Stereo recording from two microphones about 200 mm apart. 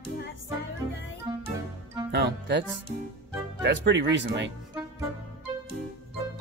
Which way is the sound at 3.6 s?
60° right (ahead or behind).